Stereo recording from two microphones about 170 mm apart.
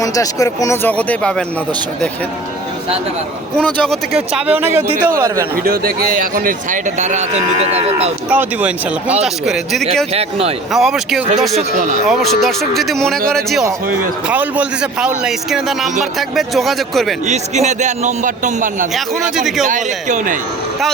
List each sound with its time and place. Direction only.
0.0 s speech: 20° left (ahead or behind)
3.6 s speech: 5° left (ahead or behind); by 5.5 s 15° right (ahead or behind)
5.6 s a man's voice: 60° right (ahead or behind); by 8.1 s 35° right (ahead or behind)
8.3 s a man's voice: 10° right (ahead or behind)
10.1 s speech: 35° right (ahead or behind)
10.7 s a man's voice: centre (ahead or behind)
17.2 s a man's voice: 40° right (ahead or behind)